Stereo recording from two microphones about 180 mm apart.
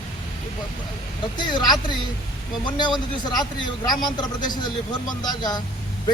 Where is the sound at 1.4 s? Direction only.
25° left (ahead or behind).